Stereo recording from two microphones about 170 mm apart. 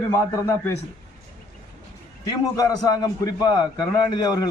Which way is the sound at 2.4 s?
20° left (ahead or behind).